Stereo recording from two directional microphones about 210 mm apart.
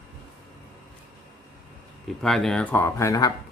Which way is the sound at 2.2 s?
Centre (ahead or behind).